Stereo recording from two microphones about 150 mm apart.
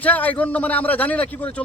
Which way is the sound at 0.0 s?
10° left (ahead or behind).